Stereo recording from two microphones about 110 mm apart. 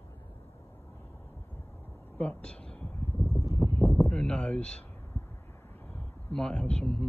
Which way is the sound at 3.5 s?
30° right (ahead or behind).